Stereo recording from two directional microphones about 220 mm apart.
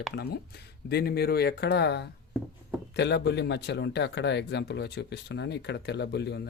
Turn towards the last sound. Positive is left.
turn(degrees=50)  # may be behind; listen again after turning